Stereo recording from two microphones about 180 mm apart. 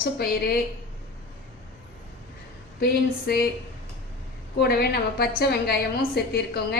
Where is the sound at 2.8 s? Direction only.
55° left (ahead or behind).